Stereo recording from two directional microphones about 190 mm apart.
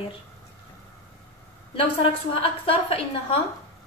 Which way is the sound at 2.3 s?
30° left (ahead or behind).